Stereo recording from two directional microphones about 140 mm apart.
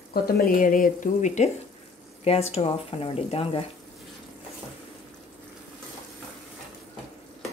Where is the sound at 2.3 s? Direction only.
45° left (ahead or behind).